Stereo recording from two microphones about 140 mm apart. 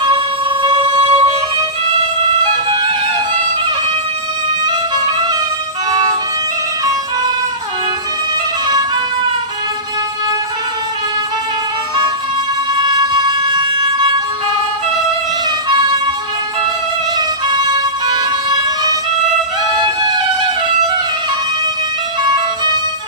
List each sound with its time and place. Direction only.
0.6 s music: 35° right (ahead or behind)
12.7 s music: 30° right (ahead or behind)
15.7 s music: 30° right (ahead or behind)
17.2 s music: 30° right (ahead or behind)
22.2 s music: 30° right (ahead or behind)